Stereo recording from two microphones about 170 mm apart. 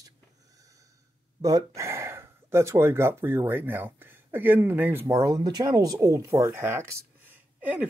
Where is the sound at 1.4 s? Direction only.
20° right (ahead or behind).